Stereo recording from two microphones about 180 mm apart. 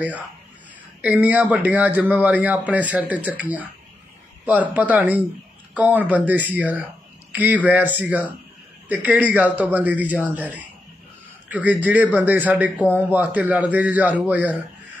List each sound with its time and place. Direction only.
1.0 s a man's voice: 10° right (ahead or behind)